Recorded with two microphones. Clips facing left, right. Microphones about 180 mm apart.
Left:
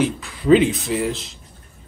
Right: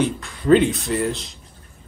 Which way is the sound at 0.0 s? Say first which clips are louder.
Left 1 dB; 5° left (ahead or behind).